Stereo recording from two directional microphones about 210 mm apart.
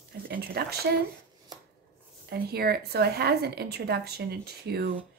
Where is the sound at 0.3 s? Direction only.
45° right (ahead or behind).